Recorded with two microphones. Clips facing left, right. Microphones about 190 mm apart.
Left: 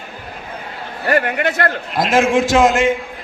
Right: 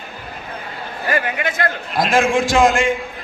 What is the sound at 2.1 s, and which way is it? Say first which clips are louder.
Speech: left 3 dB; 20° left (ahead or behind).